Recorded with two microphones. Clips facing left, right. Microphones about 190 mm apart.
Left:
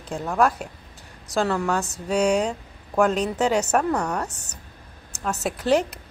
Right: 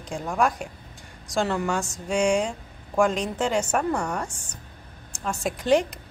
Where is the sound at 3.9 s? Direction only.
10° right (ahead or behind).